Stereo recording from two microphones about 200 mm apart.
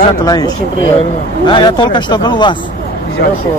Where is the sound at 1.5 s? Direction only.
25° left (ahead or behind).